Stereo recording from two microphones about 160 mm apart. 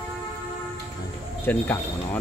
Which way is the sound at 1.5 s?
10° left (ahead or behind).